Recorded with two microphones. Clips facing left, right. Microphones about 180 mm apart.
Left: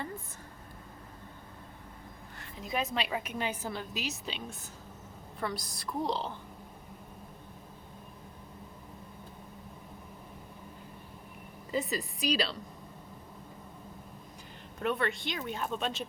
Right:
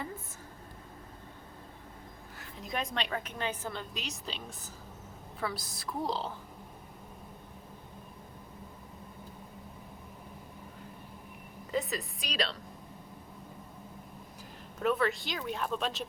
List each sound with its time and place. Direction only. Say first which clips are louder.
2.4 s a woman's voice: left 2 dB; centre (ahead or behind)
11.7 s a woman's voice: left 1 dB; centre (ahead or behind)
14.8 s a woman's voice: right 2 dB; centre (ahead or behind)